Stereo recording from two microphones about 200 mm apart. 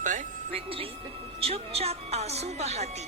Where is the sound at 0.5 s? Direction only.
25° right (ahead or behind).